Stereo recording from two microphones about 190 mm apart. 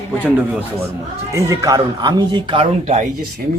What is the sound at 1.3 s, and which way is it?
Speech, 15° right (ahead or behind).